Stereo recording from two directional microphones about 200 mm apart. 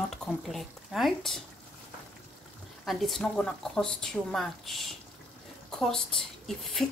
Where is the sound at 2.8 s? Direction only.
Centre (ahead or behind).